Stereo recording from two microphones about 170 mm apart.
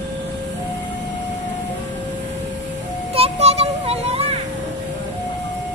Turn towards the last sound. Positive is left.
turn(degrees=-35)  # may be behind; listen again after turning